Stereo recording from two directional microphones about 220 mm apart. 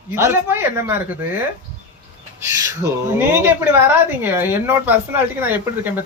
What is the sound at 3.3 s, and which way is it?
Speech, 10° right (ahead or behind).